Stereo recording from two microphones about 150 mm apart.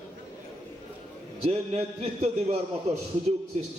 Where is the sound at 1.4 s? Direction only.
45° right (ahead or behind).